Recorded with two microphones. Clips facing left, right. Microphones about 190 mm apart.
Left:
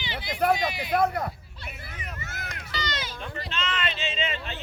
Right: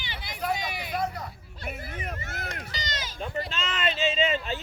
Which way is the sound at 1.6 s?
50° right (ahead or behind).